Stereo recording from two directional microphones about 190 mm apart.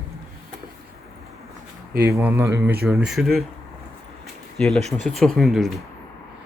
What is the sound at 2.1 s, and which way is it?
A man's voice, 10° right (ahead or behind).